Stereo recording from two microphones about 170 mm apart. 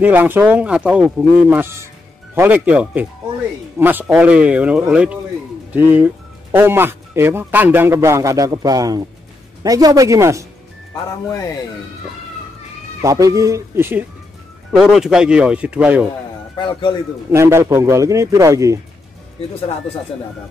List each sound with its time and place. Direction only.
0.0 s a man's voice: 10° right (ahead or behind)
13.0 s a man's voice: 20° right (ahead or behind)
16.5 s a man's voice: 25° left (ahead or behind)
17.3 s speech: 15° right (ahead or behind)